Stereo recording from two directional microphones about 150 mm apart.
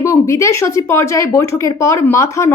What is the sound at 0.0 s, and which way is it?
A woman's voice, 20° left (ahead or behind).